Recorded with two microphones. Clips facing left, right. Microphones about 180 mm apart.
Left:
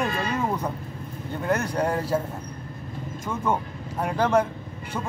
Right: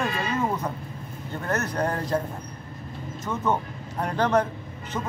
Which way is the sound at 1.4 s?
10° left (ahead or behind).